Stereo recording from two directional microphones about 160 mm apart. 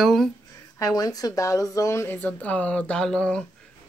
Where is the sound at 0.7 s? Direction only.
20° left (ahead or behind).